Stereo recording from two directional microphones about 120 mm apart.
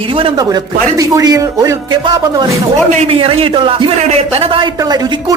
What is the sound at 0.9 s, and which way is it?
Speech, 30° right (ahead or behind).